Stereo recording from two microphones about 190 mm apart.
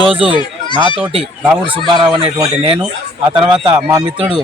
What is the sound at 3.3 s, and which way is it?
Speech, 25° right (ahead or behind).